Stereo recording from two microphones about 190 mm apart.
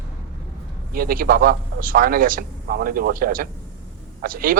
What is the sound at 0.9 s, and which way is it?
A man's voice, 50° right (ahead or behind).